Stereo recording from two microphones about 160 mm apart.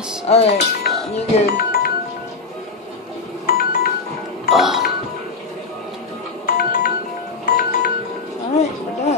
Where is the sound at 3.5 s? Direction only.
70° left (ahead or behind).